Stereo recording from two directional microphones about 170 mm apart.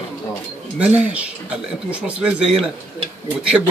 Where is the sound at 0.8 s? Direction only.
10° right (ahead or behind).